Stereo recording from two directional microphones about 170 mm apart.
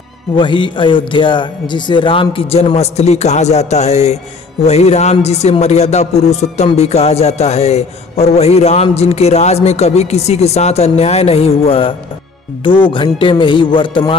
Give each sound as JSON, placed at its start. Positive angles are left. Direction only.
{"t": 0.4, "sound": "a man's voice", "side_deg": 30}
{"t": 12.6, "sound": "music", "side_deg": 30}